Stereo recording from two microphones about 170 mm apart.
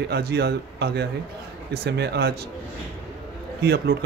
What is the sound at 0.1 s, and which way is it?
Speech, 75° right (ahead or behind).